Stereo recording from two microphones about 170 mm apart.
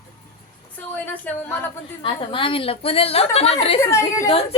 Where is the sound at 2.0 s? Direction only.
30° left (ahead or behind).